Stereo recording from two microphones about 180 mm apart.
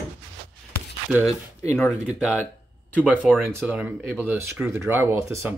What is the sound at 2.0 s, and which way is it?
Speech, 5° right (ahead or behind).